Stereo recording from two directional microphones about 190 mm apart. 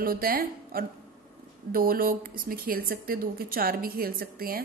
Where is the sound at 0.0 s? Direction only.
50° right (ahead or behind).